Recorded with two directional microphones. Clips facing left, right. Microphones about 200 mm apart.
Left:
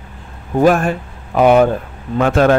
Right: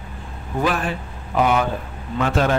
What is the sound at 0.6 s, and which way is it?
Speech, 45° left (ahead or behind).